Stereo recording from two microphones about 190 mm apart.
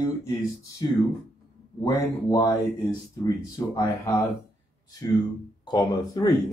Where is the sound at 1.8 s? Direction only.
20° left (ahead or behind).